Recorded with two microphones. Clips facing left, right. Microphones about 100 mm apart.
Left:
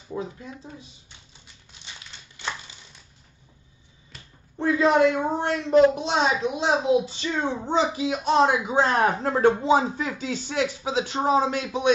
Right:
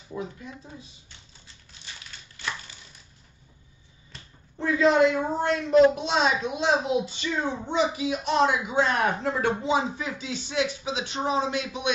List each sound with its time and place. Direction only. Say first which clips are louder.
0.1 s speech: left 2 dB; 30° left (ahead or behind)
2.0 s crumpling: even; 20° left (ahead or behind)
4.6 s a woman's voice: left 1 dB; 30° left (ahead or behind)